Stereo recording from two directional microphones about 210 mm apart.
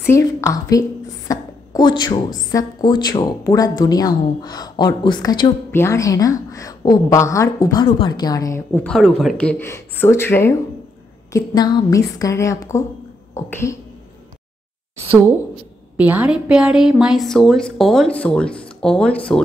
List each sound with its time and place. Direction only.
0.1 s a woman's voice: 15° left (ahead or behind)
13.3 s a sound: 15° left (ahead or behind)
16.0 s a woman's voice: 5° right (ahead or behind)